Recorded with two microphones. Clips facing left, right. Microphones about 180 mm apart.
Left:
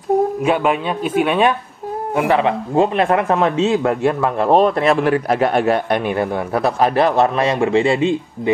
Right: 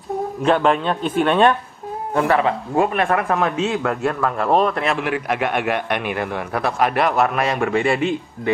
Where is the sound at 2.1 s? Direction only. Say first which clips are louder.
Left 1 dB; 20° left (ahead or behind).